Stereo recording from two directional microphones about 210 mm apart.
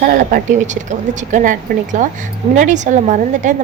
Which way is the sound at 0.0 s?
40° right (ahead or behind).